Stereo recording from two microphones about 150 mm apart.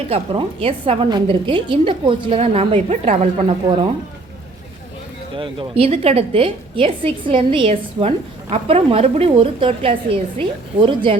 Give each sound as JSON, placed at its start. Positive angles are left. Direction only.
{"t": 0.1, "sound": "a woman's voice", "side_deg": -40}
{"t": 3.6, "sound": "speech", "side_deg": -25}
{"t": 5.4, "sound": "a woman's voice", "side_deg": -40}